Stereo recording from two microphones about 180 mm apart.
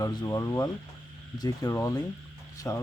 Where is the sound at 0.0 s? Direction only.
20° left (ahead or behind).